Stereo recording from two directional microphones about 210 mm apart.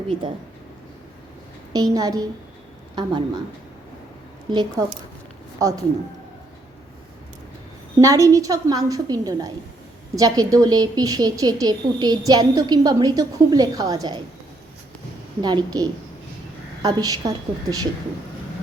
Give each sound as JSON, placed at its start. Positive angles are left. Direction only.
{"t": 1.7, "sound": "a woman's voice", "side_deg": -20}
{"t": 4.5, "sound": "a woman's voice", "side_deg": -20}
{"t": 7.9, "sound": "a woman's voice", "side_deg": -15}
{"t": 15.4, "sound": "a woman's voice", "side_deg": -20}